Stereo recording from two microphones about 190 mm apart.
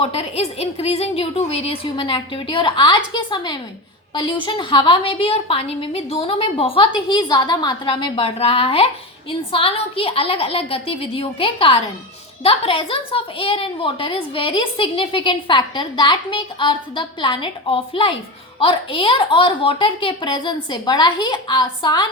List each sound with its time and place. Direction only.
0.0 s a woman's voice: 30° left (ahead or behind)